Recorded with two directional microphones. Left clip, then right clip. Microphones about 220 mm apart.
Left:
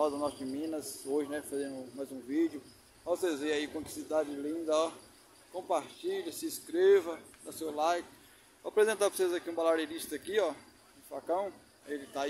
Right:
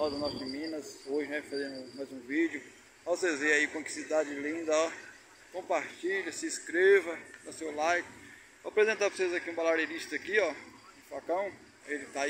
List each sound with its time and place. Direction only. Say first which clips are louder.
0.0 s speech: left 1 dB; 15° left (ahead or behind)